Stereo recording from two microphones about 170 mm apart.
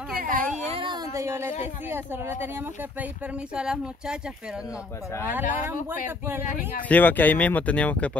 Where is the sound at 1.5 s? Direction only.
45° left (ahead or behind).